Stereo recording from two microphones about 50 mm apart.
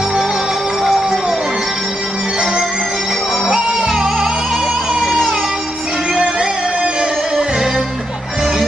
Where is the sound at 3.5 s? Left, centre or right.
Centre.